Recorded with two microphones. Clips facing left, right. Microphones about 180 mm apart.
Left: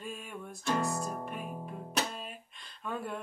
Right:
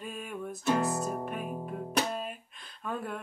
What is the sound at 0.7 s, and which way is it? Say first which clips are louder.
Music: right 4 dB; 5° right (ahead or behind).